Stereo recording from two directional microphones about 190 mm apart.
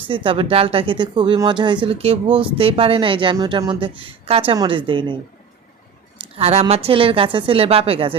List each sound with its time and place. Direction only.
0.1 s speech: 25° right (ahead or behind)
6.3 s a woman's voice: 30° right (ahead or behind)